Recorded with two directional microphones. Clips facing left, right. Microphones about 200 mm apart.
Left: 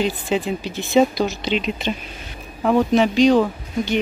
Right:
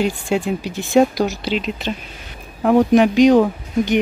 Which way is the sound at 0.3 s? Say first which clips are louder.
Right 2 dB; 10° right (ahead or behind).